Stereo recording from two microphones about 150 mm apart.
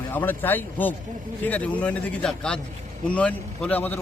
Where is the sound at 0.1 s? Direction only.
15° left (ahead or behind).